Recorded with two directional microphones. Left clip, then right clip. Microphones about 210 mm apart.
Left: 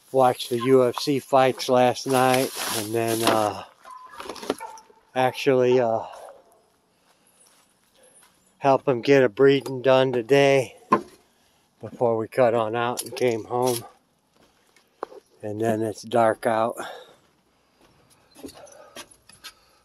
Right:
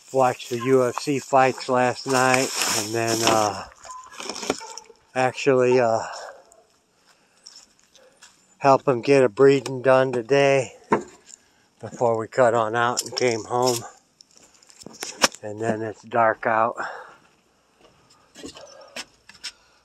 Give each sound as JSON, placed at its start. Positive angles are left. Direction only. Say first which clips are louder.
{"t": 0.1, "sound": "speech", "louder": "left 1 dB", "side_deg": 15}
{"t": 4.2, "sound": "a sound", "louder": "right 2 dB", "side_deg": -40}
{"t": 5.1, "sound": "speech", "louder": "right 1 dB", "side_deg": 0}
{"t": 7.5, "sound": "dog", "louder": "right 15 dB", "side_deg": -35}
{"t": 8.5, "sound": "speech", "louder": "right 2 dB", "side_deg": -5}
{"t": 10.2, "sound": "speech", "louder": "even", "side_deg": 15}
{"t": 11.8, "sound": "speech", "louder": "right 1 dB", "side_deg": 10}
{"t": 15.4, "sound": "speech", "louder": "left 2 dB", "side_deg": 30}
{"t": 16.4, "sound": "speech", "louder": "right 2 dB", "side_deg": 20}